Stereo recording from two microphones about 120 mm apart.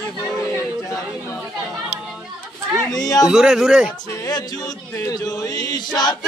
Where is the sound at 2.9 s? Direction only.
30° left (ahead or behind).